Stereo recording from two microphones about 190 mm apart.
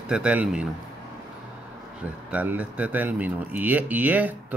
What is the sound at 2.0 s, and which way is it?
Speech, 5° right (ahead or behind).